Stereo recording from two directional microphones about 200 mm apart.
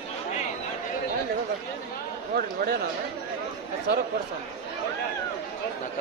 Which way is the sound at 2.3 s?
50° right (ahead or behind).